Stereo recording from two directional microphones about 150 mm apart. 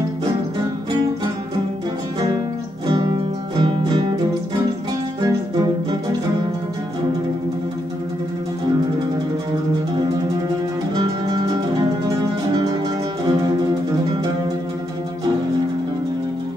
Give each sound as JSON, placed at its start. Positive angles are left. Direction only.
{"t": 2.9, "sound": "music", "side_deg": -30}
{"t": 5.2, "sound": "music", "side_deg": -25}
{"t": 11.0, "sound": "music", "side_deg": -30}
{"t": 13.3, "sound": "music", "side_deg": -25}